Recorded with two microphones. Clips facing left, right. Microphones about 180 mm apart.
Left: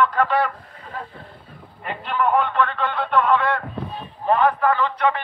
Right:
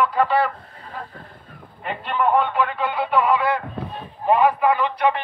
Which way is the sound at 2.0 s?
5° right (ahead or behind).